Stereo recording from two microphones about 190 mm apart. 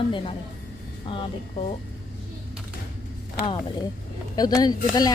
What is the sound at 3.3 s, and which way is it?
Speech, 25° left (ahead or behind).